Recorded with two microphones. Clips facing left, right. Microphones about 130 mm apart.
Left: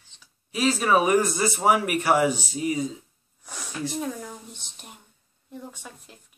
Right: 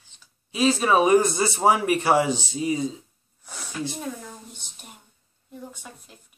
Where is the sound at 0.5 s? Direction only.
25° right (ahead or behind).